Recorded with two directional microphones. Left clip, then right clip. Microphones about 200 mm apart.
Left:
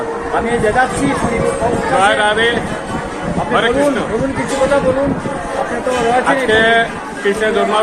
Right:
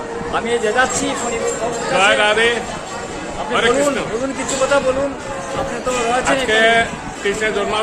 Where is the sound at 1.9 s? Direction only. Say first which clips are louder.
Even; 10° right (ahead or behind).